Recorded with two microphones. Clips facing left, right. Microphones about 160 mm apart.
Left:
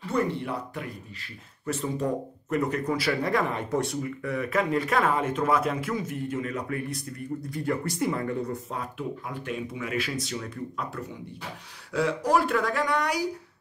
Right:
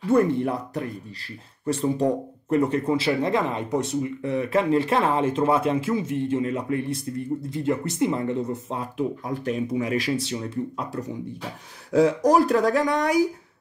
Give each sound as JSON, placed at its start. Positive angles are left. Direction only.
{"t": 0.1, "sound": "speech", "side_deg": -45}
{"t": 1.7, "sound": "speech", "side_deg": -30}
{"t": 9.3, "sound": "speech", "side_deg": -40}
{"t": 11.9, "sound": "speech", "side_deg": -45}